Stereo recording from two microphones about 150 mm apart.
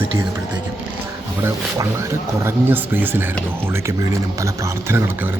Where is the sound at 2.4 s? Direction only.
15° right (ahead or behind).